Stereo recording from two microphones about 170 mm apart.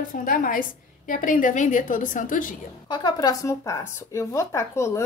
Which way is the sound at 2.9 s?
25° left (ahead or behind).